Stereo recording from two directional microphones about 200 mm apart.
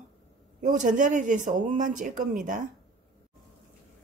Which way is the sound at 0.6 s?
40° right (ahead or behind).